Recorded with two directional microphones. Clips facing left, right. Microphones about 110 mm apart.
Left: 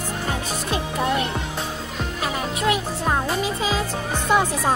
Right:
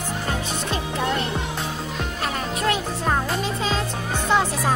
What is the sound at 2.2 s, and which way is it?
Music, 5° left (ahead or behind).